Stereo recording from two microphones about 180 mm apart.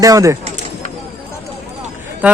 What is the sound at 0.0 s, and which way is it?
Speech, 20° right (ahead or behind).